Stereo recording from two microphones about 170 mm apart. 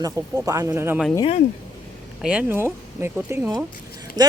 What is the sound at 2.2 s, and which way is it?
Speech, 5° right (ahead or behind).